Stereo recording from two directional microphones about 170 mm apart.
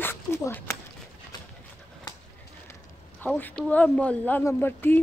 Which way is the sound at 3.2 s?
10° left (ahead or behind).